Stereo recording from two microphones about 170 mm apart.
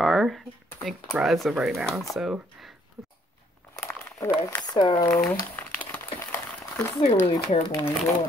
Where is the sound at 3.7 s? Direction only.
15° left (ahead or behind).